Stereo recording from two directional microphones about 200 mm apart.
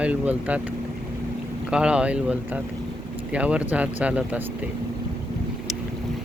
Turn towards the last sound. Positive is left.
turn(degrees=-5)  # may be behind; listen again after turning